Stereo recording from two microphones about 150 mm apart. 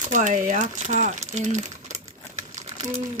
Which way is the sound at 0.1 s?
55° right (ahead or behind).